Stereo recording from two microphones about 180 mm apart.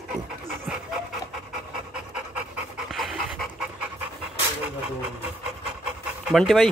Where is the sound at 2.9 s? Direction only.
Centre (ahead or behind).